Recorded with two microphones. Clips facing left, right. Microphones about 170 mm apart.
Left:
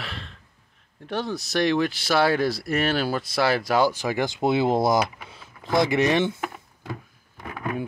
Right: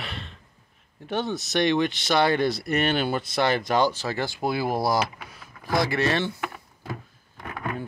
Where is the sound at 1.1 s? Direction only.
Centre (ahead or behind); by 6.4 s 20° left (ahead or behind).